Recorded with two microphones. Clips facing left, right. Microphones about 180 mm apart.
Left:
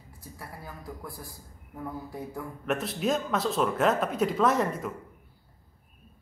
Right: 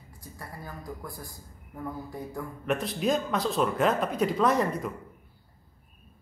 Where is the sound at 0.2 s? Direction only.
5° left (ahead or behind).